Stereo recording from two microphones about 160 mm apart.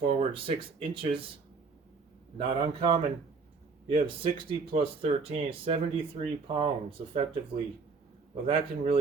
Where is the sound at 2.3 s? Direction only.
30° right (ahead or behind).